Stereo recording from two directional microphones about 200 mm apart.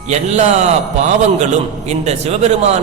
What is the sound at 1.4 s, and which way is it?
A man's voice, 35° right (ahead or behind).